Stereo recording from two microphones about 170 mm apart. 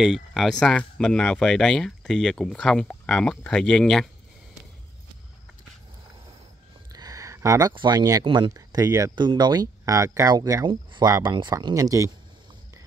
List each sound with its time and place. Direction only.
0.0 s speech: centre (ahead or behind)
6.9 s a sound: 20° right (ahead or behind)
7.7 s speech: 25° right (ahead or behind)